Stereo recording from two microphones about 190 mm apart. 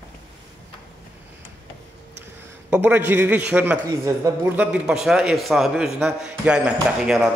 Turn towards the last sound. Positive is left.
turn(degrees=-5)  # may be behind; listen again after turning